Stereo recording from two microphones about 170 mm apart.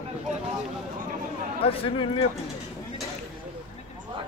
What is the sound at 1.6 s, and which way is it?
Speech, 35° left (ahead or behind).